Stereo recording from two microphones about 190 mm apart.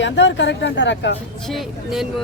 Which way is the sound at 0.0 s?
75° left (ahead or behind).